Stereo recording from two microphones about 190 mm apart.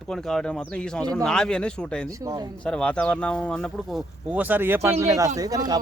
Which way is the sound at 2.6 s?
5° left (ahead or behind).